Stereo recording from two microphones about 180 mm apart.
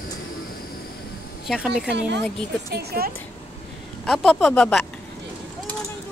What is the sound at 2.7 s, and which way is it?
Speech, 65° right (ahead or behind).